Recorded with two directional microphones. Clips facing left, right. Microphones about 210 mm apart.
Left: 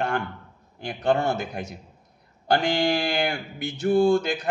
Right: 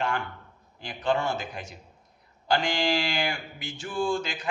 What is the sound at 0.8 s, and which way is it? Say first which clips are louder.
Speech: left 4 dB; 60° left (ahead or behind).